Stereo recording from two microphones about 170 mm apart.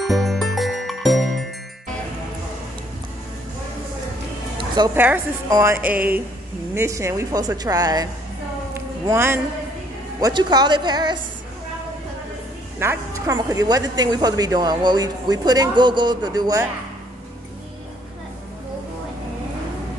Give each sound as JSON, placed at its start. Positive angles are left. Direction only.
{"t": 0.0, "sound": "music", "side_deg": 0}
{"t": 4.6, "sound": "music", "side_deg": -25}
{"t": 4.9, "sound": "music", "side_deg": -10}
{"t": 6.7, "sound": "a woman's voice", "side_deg": -15}
{"t": 8.7, "sound": "a sound", "side_deg": -15}
{"t": 10.2, "sound": "a woman's voice", "side_deg": -25}
{"t": 12.7, "sound": "a woman's voice", "side_deg": -15}